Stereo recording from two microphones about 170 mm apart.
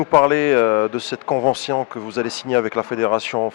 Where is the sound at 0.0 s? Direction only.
15° left (ahead or behind).